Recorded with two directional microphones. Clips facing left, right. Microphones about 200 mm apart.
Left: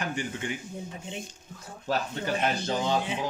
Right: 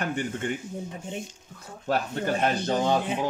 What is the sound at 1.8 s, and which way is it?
Speech, 50° right (ahead or behind).